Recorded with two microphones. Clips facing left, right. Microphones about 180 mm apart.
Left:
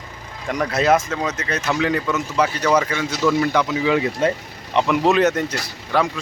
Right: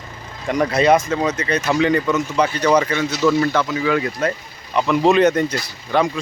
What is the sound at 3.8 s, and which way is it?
Speech, 20° left (ahead or behind).